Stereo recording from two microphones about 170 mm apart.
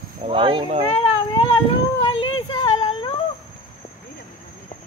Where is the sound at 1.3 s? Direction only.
30° left (ahead or behind).